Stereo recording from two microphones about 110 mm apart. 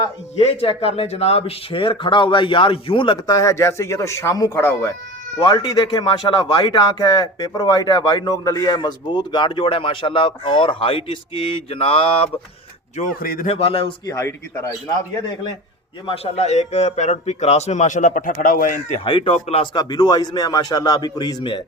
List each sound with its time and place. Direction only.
0.3 s speech: 65° left (ahead or behind)
3.2 s speech: 30° left (ahead or behind)
5.4 s speech: 40° left (ahead or behind); by 12.3 s 60° left (ahead or behind)
13.0 s speech: 90° left
13.5 s speech: 60° left (ahead or behind)
14.1 s a man's voice: 30° left (ahead or behind)
16.0 s a man's voice: 65° left (ahead or behind); by 18.0 s 90° left
19.0 s speech: 55° left (ahead or behind)
19.7 s a man's voice: 40° left (ahead or behind)